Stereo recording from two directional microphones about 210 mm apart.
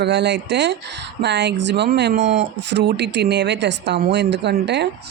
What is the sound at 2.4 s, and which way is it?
Speech, 55° right (ahead or behind).